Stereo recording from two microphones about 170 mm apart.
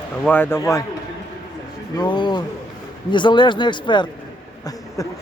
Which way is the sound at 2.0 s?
25° left (ahead or behind).